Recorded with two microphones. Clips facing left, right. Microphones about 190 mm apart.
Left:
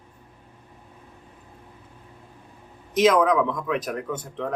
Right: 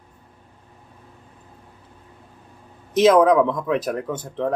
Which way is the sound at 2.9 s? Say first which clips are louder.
Right 4 dB; 30° right (ahead or behind).